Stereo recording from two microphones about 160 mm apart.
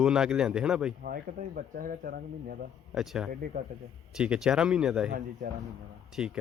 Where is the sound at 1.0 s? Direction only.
65° right (ahead or behind).